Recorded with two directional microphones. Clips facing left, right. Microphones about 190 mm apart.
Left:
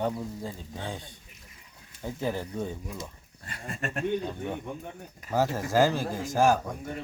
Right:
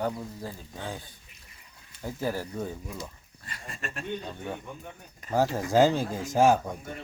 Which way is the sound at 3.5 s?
55° left (ahead or behind).